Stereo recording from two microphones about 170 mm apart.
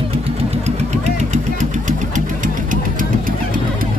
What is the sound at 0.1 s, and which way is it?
Vehicle, 35° right (ahead or behind).